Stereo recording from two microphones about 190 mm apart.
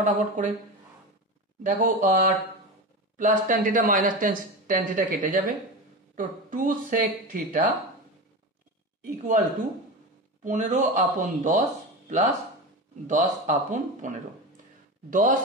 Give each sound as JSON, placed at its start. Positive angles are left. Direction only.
{"t": 0.0, "sound": "speech", "side_deg": -40}
{"t": 1.6, "sound": "speech", "side_deg": -45}
{"t": 9.0, "sound": "speech", "side_deg": -45}
{"t": 10.4, "sound": "speech", "side_deg": -40}
{"t": 13.0, "sound": "speech", "side_deg": -40}